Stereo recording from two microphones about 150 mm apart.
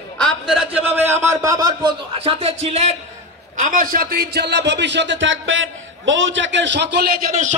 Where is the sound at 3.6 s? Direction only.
65° right (ahead or behind); by 4.8 s 90° right.